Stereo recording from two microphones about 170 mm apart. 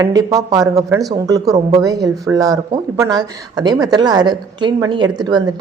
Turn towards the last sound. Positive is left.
turn(degrees=-25)  # may be behind; listen again after turning